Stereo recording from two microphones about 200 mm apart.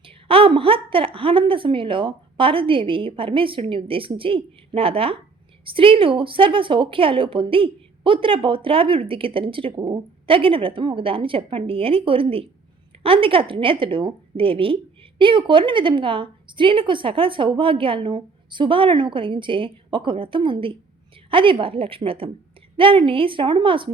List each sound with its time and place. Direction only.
0.0 s a woman's voice: 25° right (ahead or behind)